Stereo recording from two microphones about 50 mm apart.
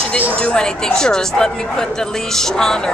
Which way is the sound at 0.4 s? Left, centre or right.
Centre.